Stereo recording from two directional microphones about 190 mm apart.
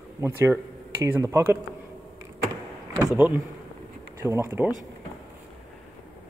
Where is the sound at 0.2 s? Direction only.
15° right (ahead or behind).